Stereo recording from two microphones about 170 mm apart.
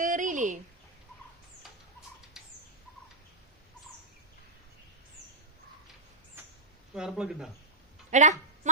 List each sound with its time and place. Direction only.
0.0 s a sound: 50° right (ahead or behind)
6.9 s speech: 5° right (ahead or behind)
8.1 s speech: 45° right (ahead or behind)